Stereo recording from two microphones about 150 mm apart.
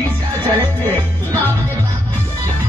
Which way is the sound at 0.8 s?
15° left (ahead or behind).